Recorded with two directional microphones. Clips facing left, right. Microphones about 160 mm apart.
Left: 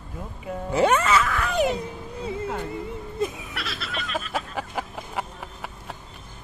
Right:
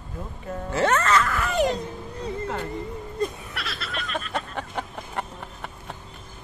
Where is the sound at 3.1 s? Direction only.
Centre (ahead or behind).